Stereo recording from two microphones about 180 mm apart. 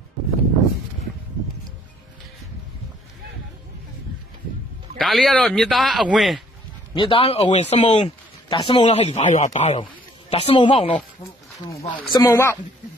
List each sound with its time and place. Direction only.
4.9 s speech: centre (ahead or behind)
7.0 s speech: 30° left (ahead or behind)
10.3 s speech: 30° left (ahead or behind); by 12.5 s 15° left (ahead or behind)